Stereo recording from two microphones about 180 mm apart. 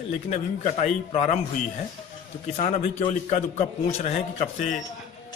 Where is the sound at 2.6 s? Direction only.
40° left (ahead or behind).